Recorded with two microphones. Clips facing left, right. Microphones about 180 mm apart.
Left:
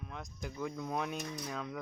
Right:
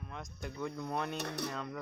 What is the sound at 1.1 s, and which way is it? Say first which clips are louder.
Speech: right 2 dB; 70° right (ahead or behind).